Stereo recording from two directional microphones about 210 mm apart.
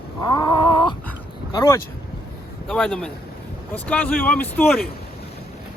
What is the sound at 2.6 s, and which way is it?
Speech, centre (ahead or behind).